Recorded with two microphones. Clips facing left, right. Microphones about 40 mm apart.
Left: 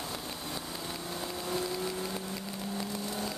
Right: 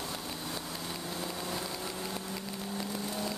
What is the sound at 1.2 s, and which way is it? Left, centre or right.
Vehicle, centre.